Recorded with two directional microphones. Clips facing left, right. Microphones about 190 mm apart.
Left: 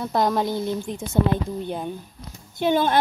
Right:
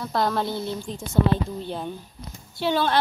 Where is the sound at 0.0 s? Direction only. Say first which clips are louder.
Left 3 dB; 15° left (ahead or behind).